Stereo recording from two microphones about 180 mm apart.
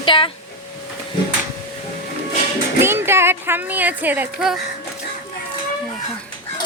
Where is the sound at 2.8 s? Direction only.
15° right (ahead or behind).